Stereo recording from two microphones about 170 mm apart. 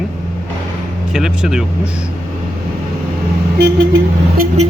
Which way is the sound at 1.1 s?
5° right (ahead or behind).